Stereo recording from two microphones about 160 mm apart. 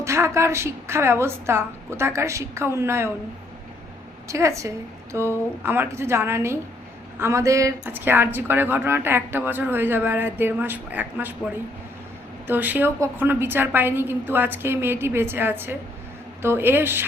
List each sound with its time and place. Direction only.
0.0 s speech: 15° right (ahead or behind)
4.3 s a woman's voice: 20° right (ahead or behind)
12.5 s speech: 10° right (ahead or behind)